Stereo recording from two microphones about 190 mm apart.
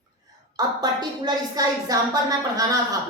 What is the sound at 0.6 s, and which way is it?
A woman's voice, 20° right (ahead or behind).